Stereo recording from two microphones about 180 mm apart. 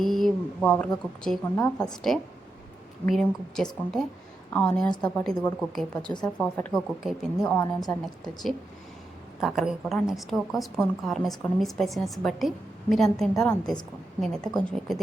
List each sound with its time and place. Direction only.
0.0 s speech: centre (ahead or behind)
1.5 s speech: 15° left (ahead or behind)
3.1 s a woman's voice: centre (ahead or behind)
7.5 s a woman's voice: 20° left (ahead or behind)
8.2 s a woman's voice: centre (ahead or behind)